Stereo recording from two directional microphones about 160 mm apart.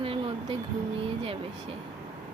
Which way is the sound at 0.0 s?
35° right (ahead or behind).